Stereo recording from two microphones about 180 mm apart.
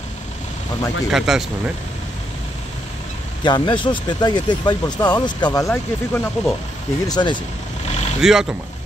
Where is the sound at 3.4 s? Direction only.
25° left (ahead or behind).